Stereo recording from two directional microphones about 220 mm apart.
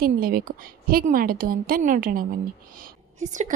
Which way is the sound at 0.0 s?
40° right (ahead or behind).